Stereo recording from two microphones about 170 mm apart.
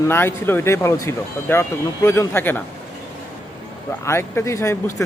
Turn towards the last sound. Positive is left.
turn(degrees=15)  # may be behind; listen again after turning